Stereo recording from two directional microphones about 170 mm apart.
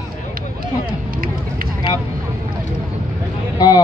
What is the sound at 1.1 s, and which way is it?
Run, 55° right (ahead or behind).